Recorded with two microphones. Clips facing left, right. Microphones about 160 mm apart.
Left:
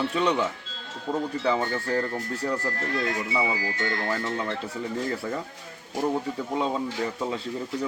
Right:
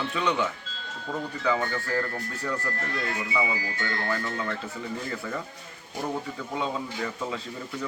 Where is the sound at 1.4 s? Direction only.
25° left (ahead or behind).